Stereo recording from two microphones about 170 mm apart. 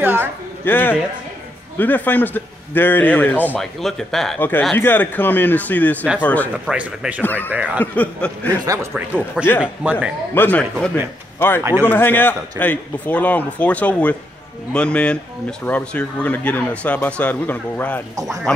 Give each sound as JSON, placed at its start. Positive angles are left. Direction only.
{"t": 0.0, "sound": "a sound", "side_deg": -10}
{"t": 0.7, "sound": "a man's voice", "side_deg": 10}
{"t": 6.6, "sound": "speech", "side_deg": -5}
{"t": 7.8, "sound": "a man's voice", "side_deg": 10}
{"t": 8.6, "sound": "speech", "side_deg": -15}
{"t": 10.3, "sound": "a man's voice", "side_deg": 10}
{"t": 18.1, "sound": "speech", "side_deg": -20}